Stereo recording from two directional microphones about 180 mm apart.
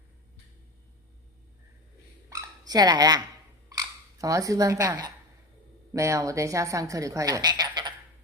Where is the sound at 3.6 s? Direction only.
20° right (ahead or behind).